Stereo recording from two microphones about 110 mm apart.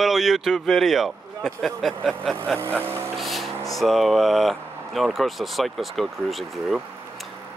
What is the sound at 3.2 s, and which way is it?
Vehicle, centre (ahead or behind).